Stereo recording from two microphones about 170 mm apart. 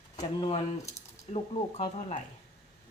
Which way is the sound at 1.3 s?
40° left (ahead or behind).